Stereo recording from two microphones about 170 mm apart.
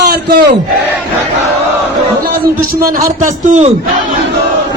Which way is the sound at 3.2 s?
45° right (ahead or behind).